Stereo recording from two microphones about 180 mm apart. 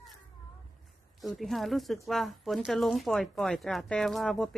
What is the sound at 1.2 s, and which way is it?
Speech, centre (ahead or behind).